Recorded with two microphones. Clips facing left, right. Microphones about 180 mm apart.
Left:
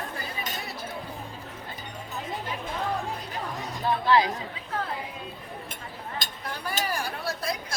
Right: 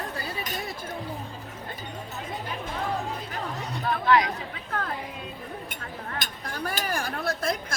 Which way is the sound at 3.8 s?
30° left (ahead or behind).